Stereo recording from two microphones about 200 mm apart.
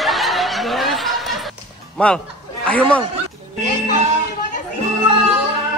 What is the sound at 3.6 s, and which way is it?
Music, 35° right (ahead or behind).